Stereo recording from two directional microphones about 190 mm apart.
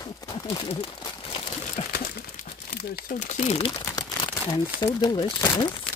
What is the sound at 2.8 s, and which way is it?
Speech, 55° left (ahead or behind).